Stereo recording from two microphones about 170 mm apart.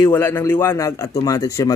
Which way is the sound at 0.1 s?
10° left (ahead or behind).